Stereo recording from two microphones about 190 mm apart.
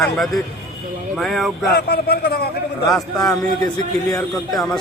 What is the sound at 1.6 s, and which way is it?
Speech, 55° left (ahead or behind).